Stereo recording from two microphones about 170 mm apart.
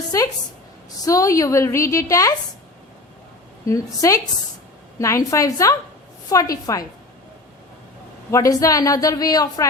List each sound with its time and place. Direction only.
0.1 s a woman's voice: 20° left (ahead or behind)
3.7 s a woman's voice: 20° left (ahead or behind)
8.3 s a woman's voice: 20° left (ahead or behind)